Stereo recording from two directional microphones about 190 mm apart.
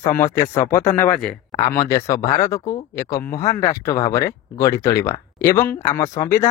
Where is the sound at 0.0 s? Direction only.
15° left (ahead or behind).